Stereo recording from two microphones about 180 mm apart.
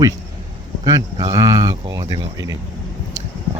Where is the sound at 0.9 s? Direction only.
20° right (ahead or behind).